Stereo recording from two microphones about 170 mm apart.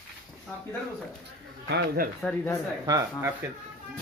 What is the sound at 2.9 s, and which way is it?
Speech, 20° right (ahead or behind).